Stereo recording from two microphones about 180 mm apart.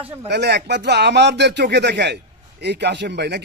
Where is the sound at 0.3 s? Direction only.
70° right (ahead or behind).